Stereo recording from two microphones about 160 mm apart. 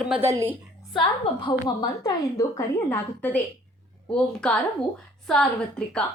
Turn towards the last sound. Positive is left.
turn(degrees=5)  # may be behind; listen again after turning